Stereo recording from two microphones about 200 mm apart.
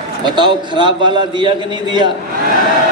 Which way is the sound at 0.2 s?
20° right (ahead or behind).